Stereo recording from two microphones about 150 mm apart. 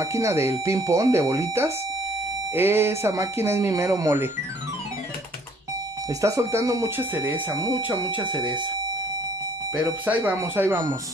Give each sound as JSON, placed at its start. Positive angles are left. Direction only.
{"t": 0.0, "sound": "speech", "side_deg": -20}
{"t": 6.0, "sound": "speech", "side_deg": -20}
{"t": 8.2, "sound": "speech", "side_deg": -30}
{"t": 9.8, "sound": "speech", "side_deg": -10}